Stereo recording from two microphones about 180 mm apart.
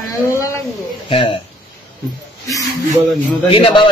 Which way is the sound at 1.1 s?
30° left (ahead or behind).